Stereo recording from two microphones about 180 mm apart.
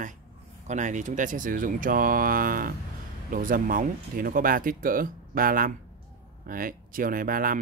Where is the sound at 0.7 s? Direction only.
45° right (ahead or behind).